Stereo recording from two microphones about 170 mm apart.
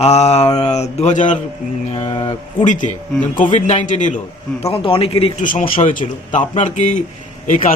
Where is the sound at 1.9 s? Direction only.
30° left (ahead or behind).